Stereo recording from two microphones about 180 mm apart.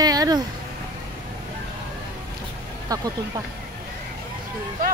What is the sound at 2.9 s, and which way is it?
Speech, 20° right (ahead or behind).